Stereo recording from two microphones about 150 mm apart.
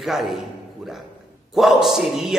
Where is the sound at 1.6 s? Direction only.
Centre (ahead or behind).